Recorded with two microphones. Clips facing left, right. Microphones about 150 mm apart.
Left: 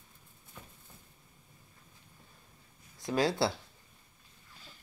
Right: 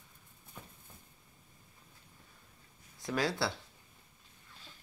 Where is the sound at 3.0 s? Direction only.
25° left (ahead or behind).